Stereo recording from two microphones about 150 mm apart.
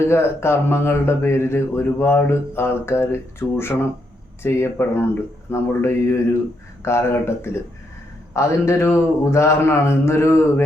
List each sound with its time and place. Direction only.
0.0 s speech: 15° left (ahead or behind)